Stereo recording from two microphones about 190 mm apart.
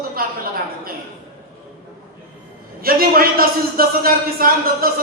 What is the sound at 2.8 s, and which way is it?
A man's voice, 50° right (ahead or behind).